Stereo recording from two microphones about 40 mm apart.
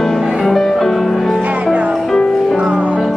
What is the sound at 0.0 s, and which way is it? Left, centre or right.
Music, centre.